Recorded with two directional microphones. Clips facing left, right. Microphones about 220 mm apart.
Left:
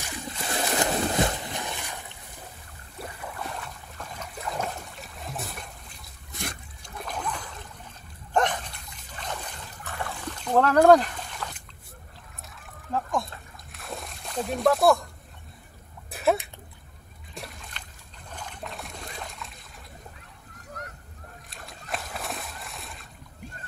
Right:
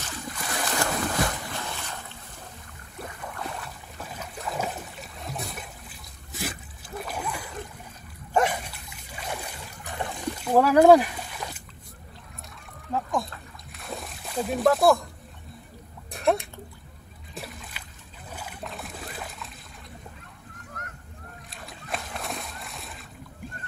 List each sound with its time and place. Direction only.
0.3 s boat: 25° left (ahead or behind)
0.7 s a sound: 20° left (ahead or behind)
3.3 s boat: centre (ahead or behind)
8.3 s dog: 10° right (ahead or behind)
12.5 s splash: centre (ahead or behind)
16.1 s a sound: 5° left (ahead or behind)
17.3 s splash: centre (ahead or behind)
18.3 s boat: 5° right (ahead or behind)
21.5 s splash: centre (ahead or behind)